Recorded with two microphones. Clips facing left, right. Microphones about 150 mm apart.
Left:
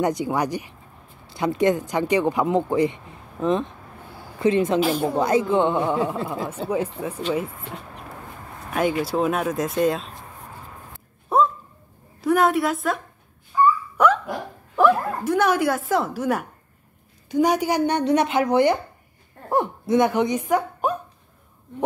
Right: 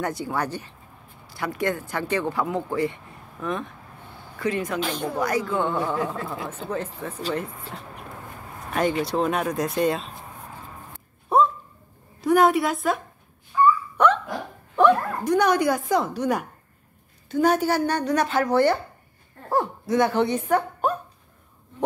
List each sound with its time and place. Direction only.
0.0 s a woman's voice: 15° left (ahead or behind)
4.7 s speech: 5° left (ahead or behind)
5.1 s a woman's voice: 25° left (ahead or behind)
6.7 s speech: 10° left (ahead or behind)
9.0 s speech: 5° left (ahead or behind)
11.3 s a sound: centre (ahead or behind)
12.2 s a woman's voice: centre (ahead or behind)
13.9 s dog: 5° left (ahead or behind)
14.8 s speech: 5° left (ahead or behind)
17.3 s speech: 15° left (ahead or behind)